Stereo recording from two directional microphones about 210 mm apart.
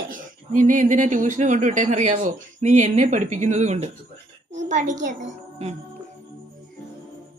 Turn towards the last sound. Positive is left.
turn(degrees=-35)  # may be behind; listen again after turning